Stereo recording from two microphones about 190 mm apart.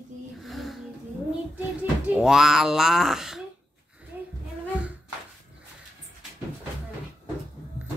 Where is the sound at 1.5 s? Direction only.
10° right (ahead or behind).